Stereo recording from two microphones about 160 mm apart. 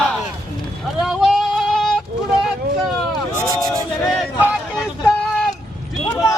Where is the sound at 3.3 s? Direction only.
25° right (ahead or behind).